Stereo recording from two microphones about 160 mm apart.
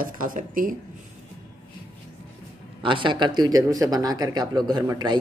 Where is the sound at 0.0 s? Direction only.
60° right (ahead or behind).